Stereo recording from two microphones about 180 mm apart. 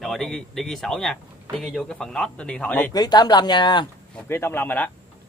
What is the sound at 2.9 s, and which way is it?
Speech, 20° left (ahead or behind).